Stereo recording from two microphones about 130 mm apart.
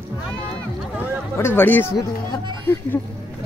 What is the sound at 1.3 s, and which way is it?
Speech, 15° left (ahead or behind).